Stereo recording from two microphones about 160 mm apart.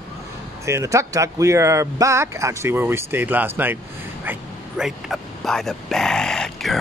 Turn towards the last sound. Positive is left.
turn(degrees=5)  # may be behind; listen again after turning